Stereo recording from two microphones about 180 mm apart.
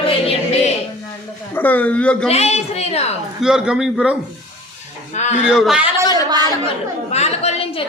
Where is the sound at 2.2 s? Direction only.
35° left (ahead or behind).